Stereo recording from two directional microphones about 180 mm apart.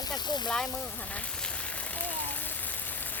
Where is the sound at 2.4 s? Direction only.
10° left (ahead or behind).